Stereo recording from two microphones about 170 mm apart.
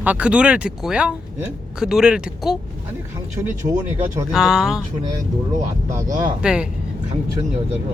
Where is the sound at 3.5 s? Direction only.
20° right (ahead or behind).